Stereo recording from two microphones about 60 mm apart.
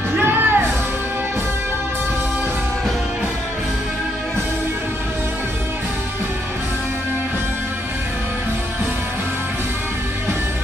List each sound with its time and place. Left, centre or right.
0.2 s music: right